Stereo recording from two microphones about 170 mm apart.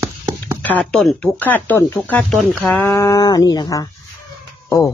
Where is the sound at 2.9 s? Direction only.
20° left (ahead or behind).